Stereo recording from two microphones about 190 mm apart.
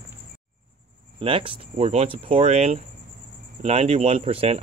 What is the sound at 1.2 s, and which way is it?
Speech, 30° right (ahead or behind).